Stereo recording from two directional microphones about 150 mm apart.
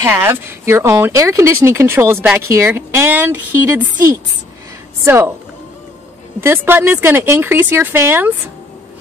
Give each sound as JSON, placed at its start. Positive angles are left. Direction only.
{"t": 0.0, "sound": "speech", "side_deg": -15}
{"t": 6.4, "sound": "speech", "side_deg": -15}